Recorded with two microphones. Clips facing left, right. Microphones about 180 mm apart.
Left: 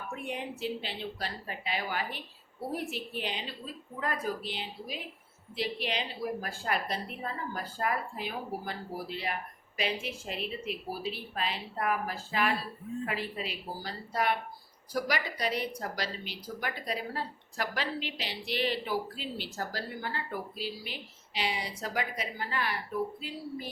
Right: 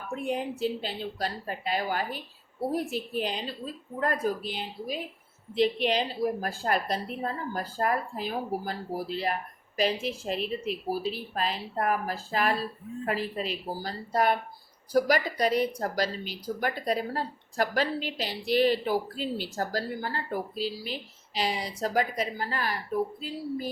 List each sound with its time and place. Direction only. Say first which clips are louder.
0.1 s a woman's voice: right 8 dB; 35° right (ahead or behind)